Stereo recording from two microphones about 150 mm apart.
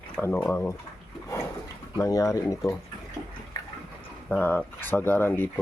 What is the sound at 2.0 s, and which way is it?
Speech, 20° left (ahead or behind).